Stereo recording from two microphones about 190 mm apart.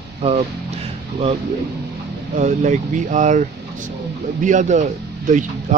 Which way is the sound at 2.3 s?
40° right (ahead or behind).